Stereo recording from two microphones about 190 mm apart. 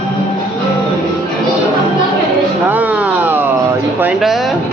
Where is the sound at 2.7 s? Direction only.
10° right (ahead or behind).